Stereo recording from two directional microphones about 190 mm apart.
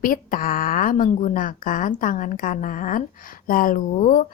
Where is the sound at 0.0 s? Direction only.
50° left (ahead or behind).